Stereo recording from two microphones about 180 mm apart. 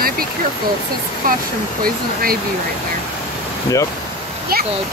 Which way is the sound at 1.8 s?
55° right (ahead or behind).